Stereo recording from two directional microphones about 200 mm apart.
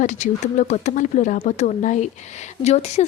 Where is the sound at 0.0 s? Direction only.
40° left (ahead or behind).